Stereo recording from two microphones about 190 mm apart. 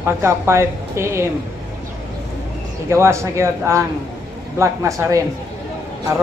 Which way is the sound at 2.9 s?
15° right (ahead or behind).